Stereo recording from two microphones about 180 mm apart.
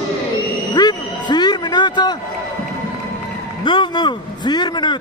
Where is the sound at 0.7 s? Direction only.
25° left (ahead or behind).